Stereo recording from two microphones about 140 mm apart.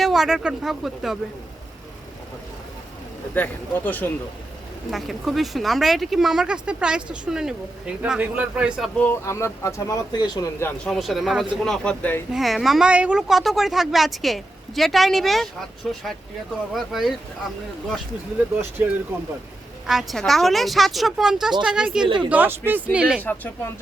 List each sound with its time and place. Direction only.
0.0 s speech: centre (ahead or behind)
3.3 s speech: 10° left (ahead or behind)
4.9 s speech: centre (ahead or behind)
9.0 s speech: 15° left (ahead or behind)
10.7 s speech: centre (ahead or behind)
12.3 s speech: centre (ahead or behind)
18.8 s speech: 15° right (ahead or behind)
19.9 s speech: centre (ahead or behind)
22.0 s speech: 35° right (ahead or behind)
22.3 s speech: 15° right (ahead or behind)
23.2 s speech: 10° left (ahead or behind)